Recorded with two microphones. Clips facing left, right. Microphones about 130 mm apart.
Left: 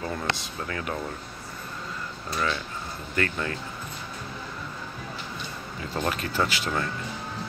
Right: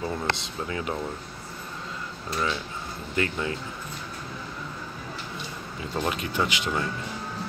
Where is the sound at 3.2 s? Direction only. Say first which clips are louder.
Right 1 dB; 15° right (ahead or behind).